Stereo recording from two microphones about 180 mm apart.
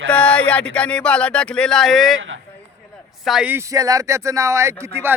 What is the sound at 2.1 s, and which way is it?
Speech, 90° right.